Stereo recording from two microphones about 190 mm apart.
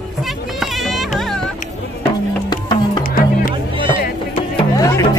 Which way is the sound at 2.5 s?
20° left (ahead or behind).